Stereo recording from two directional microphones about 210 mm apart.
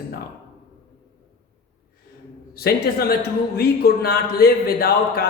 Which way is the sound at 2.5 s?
45° left (ahead or behind).